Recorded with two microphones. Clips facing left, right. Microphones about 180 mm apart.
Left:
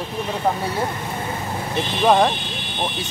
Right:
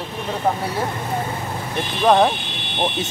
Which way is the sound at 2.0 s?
Centre (ahead or behind).